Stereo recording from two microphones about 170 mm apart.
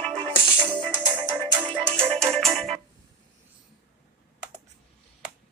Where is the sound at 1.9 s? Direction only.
35° right (ahead or behind).